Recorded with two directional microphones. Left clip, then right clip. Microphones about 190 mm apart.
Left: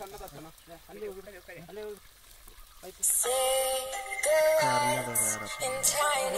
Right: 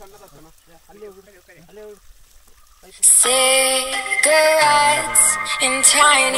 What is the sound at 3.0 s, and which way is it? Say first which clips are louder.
Music: right 12 dB; 50° right (ahead or behind).